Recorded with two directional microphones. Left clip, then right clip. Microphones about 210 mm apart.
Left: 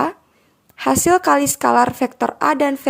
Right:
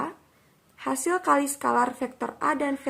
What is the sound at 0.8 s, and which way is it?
A woman's voice, 40° left (ahead or behind).